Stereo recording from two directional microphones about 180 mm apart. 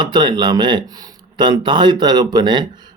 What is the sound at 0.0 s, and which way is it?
A man's voice, 25° right (ahead or behind).